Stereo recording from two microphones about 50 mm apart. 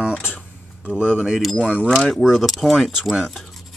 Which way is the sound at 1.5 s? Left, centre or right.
Left.